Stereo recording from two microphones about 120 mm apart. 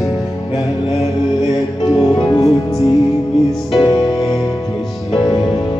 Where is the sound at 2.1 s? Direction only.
30° left (ahead or behind).